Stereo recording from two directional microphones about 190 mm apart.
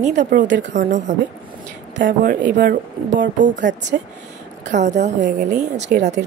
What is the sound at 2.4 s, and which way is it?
Speech, 65° right (ahead or behind).